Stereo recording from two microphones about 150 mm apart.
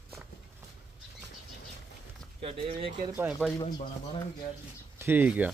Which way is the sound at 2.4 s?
40° right (ahead or behind).